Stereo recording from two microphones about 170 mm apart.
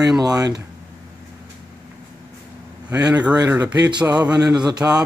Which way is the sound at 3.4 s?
20° right (ahead or behind).